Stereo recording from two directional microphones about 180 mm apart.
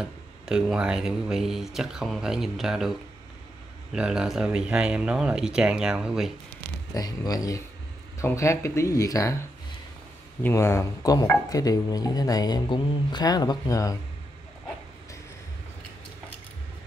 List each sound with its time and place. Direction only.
0.0 s speech: 5° right (ahead or behind)
6.9 s speech: 20° left (ahead or behind)
10.4 s speech: 15° left (ahead or behind)